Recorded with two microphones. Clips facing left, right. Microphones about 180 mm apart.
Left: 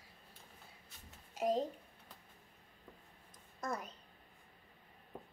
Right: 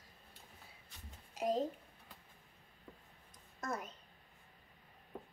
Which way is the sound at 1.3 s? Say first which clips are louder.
Left 1 dB; centre (ahead or behind).